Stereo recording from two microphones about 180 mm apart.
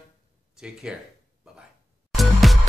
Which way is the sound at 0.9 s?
5° right (ahead or behind).